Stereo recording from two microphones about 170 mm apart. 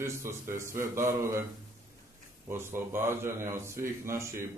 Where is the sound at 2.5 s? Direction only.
15° right (ahead or behind).